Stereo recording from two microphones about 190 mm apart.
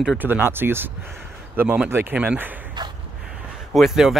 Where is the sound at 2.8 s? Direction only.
25° right (ahead or behind).